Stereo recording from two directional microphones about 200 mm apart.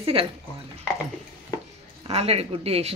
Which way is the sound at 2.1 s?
30° right (ahead or behind).